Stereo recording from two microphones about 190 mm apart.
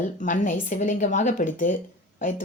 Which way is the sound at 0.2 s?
40° left (ahead or behind).